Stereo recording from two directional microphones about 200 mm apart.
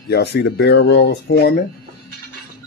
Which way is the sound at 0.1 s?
55° left (ahead or behind).